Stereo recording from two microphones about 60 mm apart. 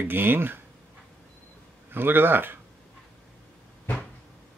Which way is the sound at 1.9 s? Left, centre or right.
Right.